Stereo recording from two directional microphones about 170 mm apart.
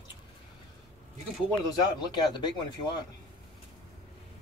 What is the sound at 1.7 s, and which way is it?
Speech, 25° left (ahead or behind).